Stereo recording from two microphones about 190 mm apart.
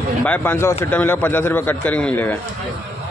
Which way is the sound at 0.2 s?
10° left (ahead or behind).